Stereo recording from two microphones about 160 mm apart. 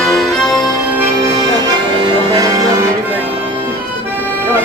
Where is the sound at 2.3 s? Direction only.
20° right (ahead or behind).